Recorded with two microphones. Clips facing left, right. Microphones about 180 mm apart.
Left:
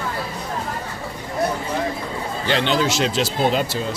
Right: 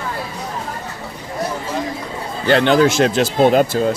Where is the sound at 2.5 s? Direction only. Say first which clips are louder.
Right 7 dB; 50° right (ahead or behind).